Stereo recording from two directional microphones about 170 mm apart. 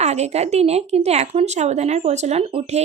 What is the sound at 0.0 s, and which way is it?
Speech, 40° right (ahead or behind).